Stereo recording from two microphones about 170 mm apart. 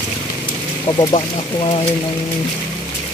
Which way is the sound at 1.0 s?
30° left (ahead or behind).